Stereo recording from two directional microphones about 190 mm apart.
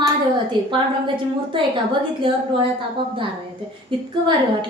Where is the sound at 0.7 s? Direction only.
25° right (ahead or behind).